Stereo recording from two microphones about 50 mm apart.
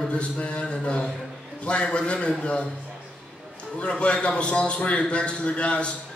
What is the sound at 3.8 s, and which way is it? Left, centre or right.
A man's voice, left.